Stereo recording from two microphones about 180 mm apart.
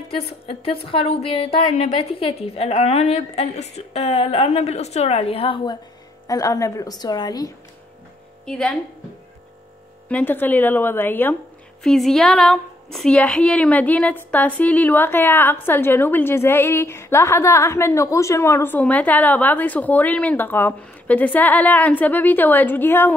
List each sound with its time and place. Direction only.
0.1 s a woman's voice: 30° left (ahead or behind)
6.2 s a woman's voice: 20° left (ahead or behind)
8.5 s a woman's voice: 5° left (ahead or behind)
10.0 s a woman's voice: 10° left (ahead or behind)